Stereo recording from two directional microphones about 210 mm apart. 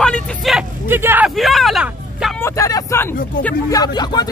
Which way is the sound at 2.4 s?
15° left (ahead or behind).